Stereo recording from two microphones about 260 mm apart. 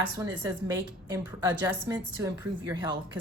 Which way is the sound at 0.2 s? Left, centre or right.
Centre.